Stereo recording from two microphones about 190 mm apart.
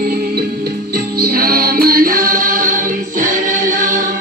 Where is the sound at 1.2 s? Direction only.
50° right (ahead or behind).